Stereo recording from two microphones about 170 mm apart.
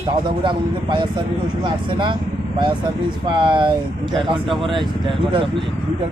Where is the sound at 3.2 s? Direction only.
30° right (ahead or behind).